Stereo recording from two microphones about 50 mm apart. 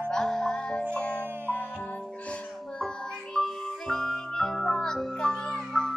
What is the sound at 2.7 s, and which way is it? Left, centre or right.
Music, centre.